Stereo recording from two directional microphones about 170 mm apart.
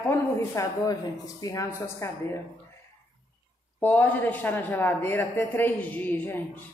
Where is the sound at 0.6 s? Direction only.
20° left (ahead or behind).